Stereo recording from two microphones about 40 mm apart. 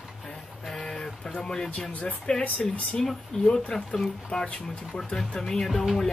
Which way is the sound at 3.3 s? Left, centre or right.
Centre.